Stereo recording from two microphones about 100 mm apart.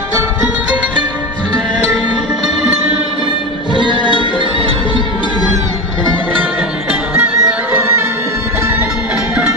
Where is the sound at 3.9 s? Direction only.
55° left (ahead or behind).